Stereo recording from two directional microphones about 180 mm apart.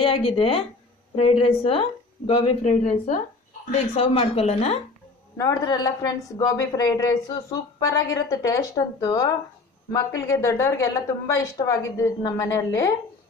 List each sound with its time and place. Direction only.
0.0 s a woman's voice: 30° left (ahead or behind)
5.4 s a woman's voice: 20° left (ahead or behind)